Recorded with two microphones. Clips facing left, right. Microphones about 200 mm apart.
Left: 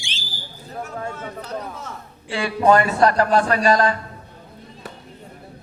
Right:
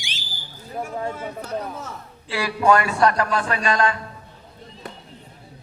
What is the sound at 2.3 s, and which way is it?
A man's voice, 30° left (ahead or behind).